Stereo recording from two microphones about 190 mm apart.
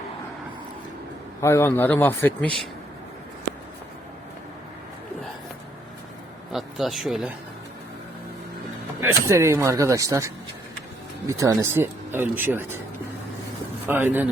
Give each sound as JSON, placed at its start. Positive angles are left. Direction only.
{"t": 1.4, "sound": "a man's voice", "side_deg": 15}
{"t": 6.5, "sound": "speech", "side_deg": 0}
{"t": 9.0, "sound": "speech", "side_deg": -15}
{"t": 13.8, "sound": "speech", "side_deg": -10}